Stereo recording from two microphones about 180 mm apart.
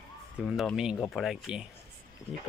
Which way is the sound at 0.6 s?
Centre (ahead or behind).